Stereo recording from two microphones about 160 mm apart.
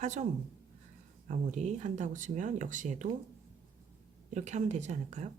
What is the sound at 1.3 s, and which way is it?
Speech, 50° right (ahead or behind).